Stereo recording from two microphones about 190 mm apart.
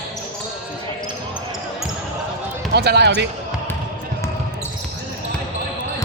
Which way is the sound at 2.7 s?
60° right (ahead or behind).